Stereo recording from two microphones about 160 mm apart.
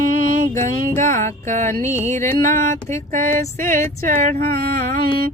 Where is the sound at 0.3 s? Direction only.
55° right (ahead or behind).